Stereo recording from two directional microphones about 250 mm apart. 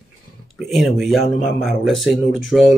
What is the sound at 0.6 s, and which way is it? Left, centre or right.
Speech, centre.